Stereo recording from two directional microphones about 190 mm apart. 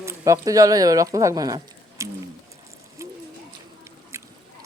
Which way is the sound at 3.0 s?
15° right (ahead or behind).